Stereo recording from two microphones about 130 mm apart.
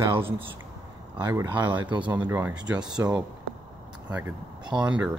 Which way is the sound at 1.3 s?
15° right (ahead or behind).